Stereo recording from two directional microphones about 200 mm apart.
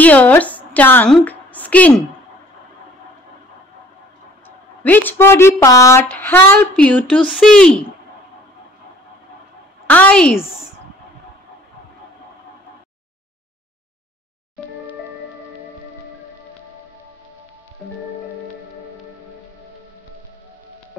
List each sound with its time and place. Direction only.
0.0 s a woman's voice: 10° left (ahead or behind)
4.8 s speech: 10° left (ahead or behind)
9.8 s speech: 5° left (ahead or behind)